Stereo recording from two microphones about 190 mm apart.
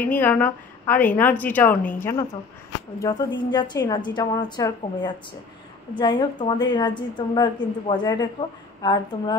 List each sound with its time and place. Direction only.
0.0 s a woman's voice: 10° left (ahead or behind)